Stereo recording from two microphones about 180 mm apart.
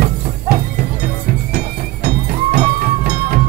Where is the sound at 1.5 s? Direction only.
60° right (ahead or behind).